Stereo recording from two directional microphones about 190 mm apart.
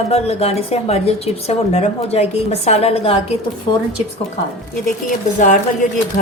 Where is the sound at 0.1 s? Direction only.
35° left (ahead or behind).